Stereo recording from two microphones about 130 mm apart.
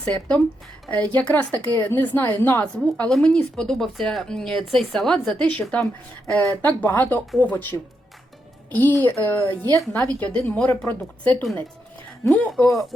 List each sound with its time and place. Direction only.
0.0 s a woman's voice: 10° left (ahead or behind)